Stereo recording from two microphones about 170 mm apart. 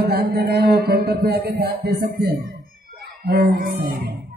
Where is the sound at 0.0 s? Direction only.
70° right (ahead or behind).